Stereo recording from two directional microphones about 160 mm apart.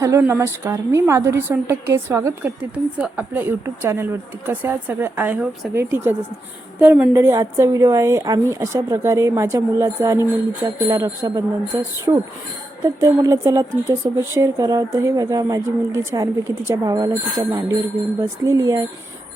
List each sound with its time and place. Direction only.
0.0 s a woman's voice: 15° right (ahead or behind)